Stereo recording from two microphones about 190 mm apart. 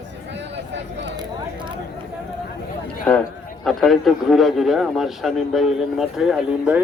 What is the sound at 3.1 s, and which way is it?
A man's voice, 10° left (ahead or behind).